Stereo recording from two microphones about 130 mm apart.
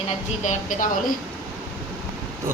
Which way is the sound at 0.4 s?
90° left.